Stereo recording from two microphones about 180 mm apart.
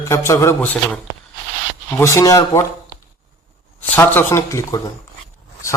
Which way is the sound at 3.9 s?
10° left (ahead or behind).